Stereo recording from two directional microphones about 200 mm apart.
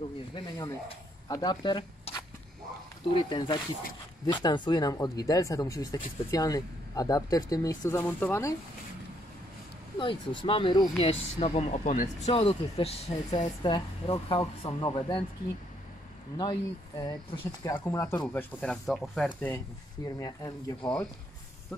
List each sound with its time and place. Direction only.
0.3 s speech: 15° left (ahead or behind)
9.9 s speech: 25° left (ahead or behind)
16.3 s speech: 20° left (ahead or behind)
18.3 s speech: 5° left (ahead or behind)
20.2 s speech: 15° left (ahead or behind)